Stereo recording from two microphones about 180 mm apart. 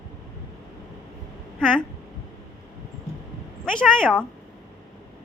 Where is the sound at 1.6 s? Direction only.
5° left (ahead or behind).